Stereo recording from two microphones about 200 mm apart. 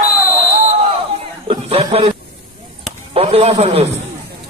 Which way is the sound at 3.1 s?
30° right (ahead or behind).